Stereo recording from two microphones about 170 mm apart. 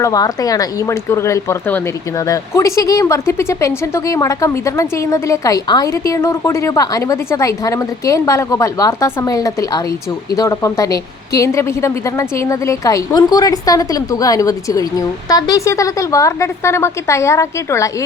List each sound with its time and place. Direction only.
0.0 s a woman's voice: 20° left (ahead or behind)